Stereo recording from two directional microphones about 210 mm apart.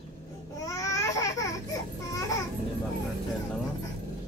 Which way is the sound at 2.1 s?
15° left (ahead or behind).